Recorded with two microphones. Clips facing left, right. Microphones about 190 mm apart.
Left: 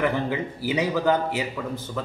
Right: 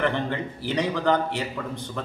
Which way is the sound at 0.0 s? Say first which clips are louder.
Left 1 dB; 5° left (ahead or behind).